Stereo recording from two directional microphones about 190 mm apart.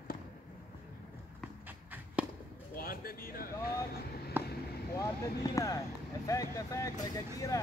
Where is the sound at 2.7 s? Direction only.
50° left (ahead or behind).